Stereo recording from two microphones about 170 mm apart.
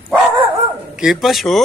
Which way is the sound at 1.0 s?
5° right (ahead or behind).